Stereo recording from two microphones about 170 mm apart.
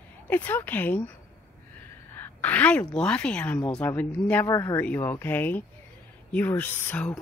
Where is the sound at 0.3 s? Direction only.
10° left (ahead or behind).